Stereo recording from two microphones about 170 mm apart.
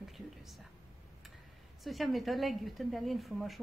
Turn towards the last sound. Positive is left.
turn(degrees=0)  # may be behind; listen again after turning